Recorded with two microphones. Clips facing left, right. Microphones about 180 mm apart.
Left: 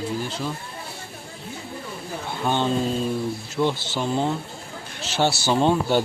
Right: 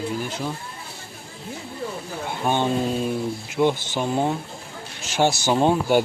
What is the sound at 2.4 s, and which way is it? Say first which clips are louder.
Speech: right 1 dB; 15° right (ahead or behind).